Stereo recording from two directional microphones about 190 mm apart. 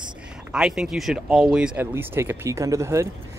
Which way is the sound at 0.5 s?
Centre (ahead or behind).